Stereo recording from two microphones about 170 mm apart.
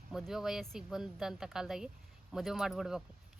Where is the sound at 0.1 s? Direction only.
5° right (ahead or behind).